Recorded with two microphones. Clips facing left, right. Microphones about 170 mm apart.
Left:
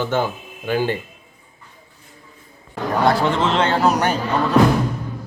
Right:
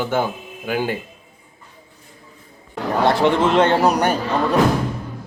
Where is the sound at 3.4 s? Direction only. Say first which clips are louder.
Right 5 dB; 50° right (ahead or behind).